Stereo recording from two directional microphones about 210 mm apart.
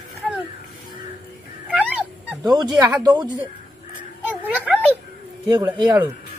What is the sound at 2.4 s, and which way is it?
Speech, 20° right (ahead or behind).